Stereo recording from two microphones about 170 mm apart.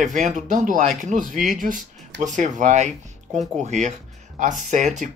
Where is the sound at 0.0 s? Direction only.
45° right (ahead or behind).